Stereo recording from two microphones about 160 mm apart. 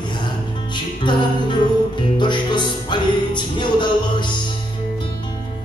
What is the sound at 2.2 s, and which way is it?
Music, 30° left (ahead or behind).